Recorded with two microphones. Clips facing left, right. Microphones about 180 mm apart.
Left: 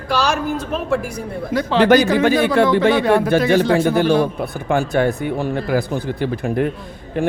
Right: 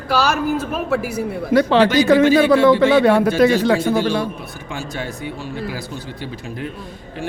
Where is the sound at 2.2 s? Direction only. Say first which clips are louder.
Right 3 dB; 60° left (ahead or behind).